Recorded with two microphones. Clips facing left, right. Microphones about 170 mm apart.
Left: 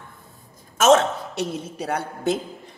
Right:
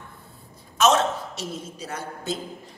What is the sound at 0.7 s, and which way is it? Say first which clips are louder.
A man's voice: left 4 dB; 55° left (ahead or behind).